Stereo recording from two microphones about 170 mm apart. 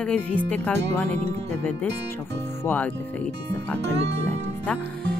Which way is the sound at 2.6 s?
10° left (ahead or behind).